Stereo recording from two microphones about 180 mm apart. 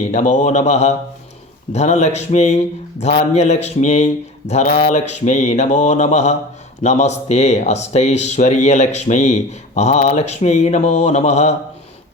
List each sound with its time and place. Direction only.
0.1 s speech: 40° left (ahead or behind)